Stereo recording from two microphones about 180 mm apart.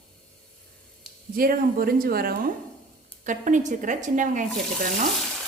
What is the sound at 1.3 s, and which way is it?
A woman's voice, 55° right (ahead or behind).